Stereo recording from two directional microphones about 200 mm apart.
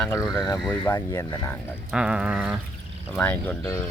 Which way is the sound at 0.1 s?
20° left (ahead or behind).